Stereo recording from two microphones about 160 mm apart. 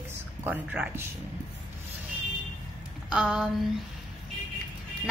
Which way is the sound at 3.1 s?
5° right (ahead or behind).